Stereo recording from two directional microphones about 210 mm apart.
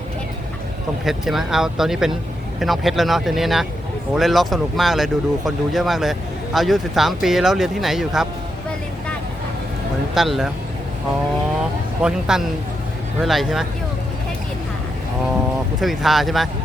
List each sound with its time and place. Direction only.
1.0 s speech: centre (ahead or behind)
10.2 s speech: centre (ahead or behind)
12.0 s speech: 5° right (ahead or behind)
13.2 s speech: centre (ahead or behind)
15.8 s speech: centre (ahead or behind)